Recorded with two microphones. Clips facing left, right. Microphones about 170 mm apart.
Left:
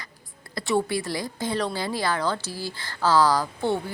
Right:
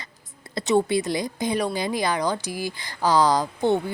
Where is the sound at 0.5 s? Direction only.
20° right (ahead or behind).